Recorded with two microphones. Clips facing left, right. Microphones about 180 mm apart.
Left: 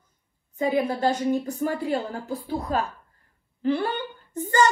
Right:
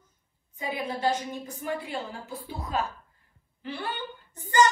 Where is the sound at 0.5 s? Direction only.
40° left (ahead or behind).